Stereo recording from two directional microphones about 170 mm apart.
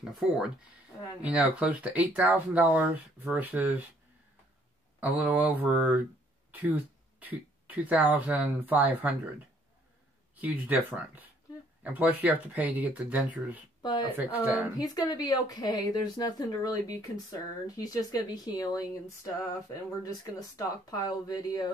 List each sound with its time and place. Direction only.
0.0 s speech: 5° right (ahead or behind)
5.0 s speech: 10° right (ahead or behind)
10.3 s speech: 10° right (ahead or behind)
14.8 s speech: 20° left (ahead or behind)